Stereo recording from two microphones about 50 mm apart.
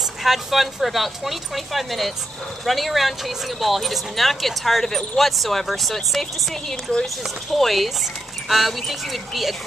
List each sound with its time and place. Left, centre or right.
0.2 s speech: centre
6.7 s speech: centre
7.5 s speech: centre